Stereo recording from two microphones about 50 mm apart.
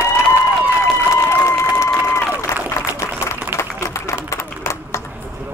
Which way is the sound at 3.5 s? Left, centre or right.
Left.